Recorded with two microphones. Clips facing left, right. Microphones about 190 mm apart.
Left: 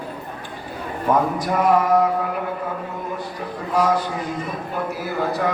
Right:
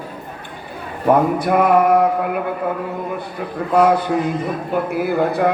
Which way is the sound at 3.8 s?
60° right (ahead or behind).